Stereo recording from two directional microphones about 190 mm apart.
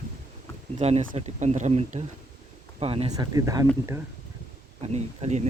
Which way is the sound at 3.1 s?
20° right (ahead or behind).